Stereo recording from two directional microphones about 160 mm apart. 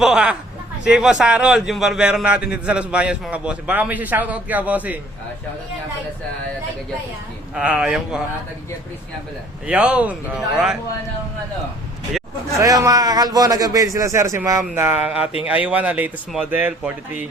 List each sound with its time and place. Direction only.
0.0 s a man's voice: 5° right (ahead or behind)
7.5 s speech: 5° right (ahead or behind)
9.6 s a man's voice: 10° right (ahead or behind)
12.5 s a man's voice: 20° right (ahead or behind)